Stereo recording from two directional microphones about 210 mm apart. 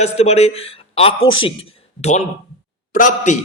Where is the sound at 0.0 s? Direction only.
30° left (ahead or behind).